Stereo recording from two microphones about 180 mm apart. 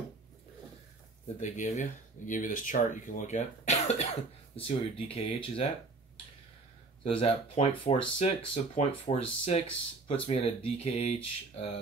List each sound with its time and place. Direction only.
1.4 s speech: 40° left (ahead or behind)
7.1 s speech: 30° left (ahead or behind)